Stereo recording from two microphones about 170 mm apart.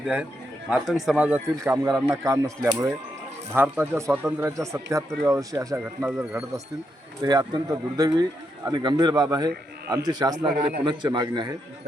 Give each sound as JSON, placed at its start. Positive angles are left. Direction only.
{"t": 0.0, "sound": "speech", "side_deg": -10}
{"t": 7.2, "sound": "speech", "side_deg": -25}
{"t": 10.5, "sound": "a man's voice", "side_deg": -60}
{"t": 10.8, "sound": "speech", "side_deg": -25}